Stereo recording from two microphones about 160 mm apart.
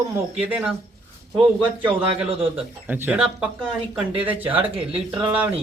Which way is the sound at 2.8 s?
10° right (ahead or behind).